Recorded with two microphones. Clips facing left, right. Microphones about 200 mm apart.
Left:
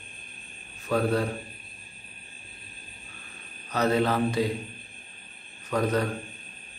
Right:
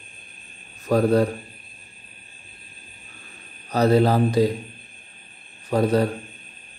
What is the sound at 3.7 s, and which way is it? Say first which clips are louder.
Speech: right 6 dB; 35° right (ahead or behind).